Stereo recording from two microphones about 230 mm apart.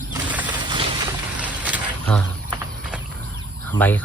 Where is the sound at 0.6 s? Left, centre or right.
Centre.